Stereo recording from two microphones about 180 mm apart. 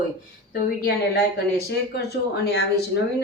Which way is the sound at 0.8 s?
60° left (ahead or behind).